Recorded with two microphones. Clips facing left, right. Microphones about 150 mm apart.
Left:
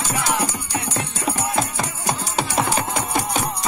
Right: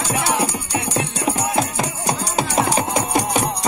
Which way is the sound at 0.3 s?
15° right (ahead or behind).